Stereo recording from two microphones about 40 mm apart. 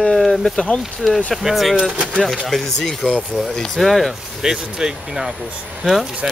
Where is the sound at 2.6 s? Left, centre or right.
Centre.